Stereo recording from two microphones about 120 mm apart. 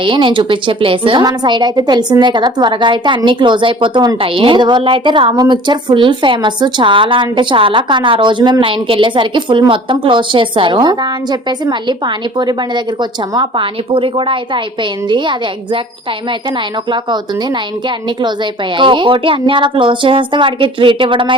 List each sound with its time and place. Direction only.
0.0 s a woman's voice: 45° right (ahead or behind)
16.9 s a woman's voice: 40° right (ahead or behind)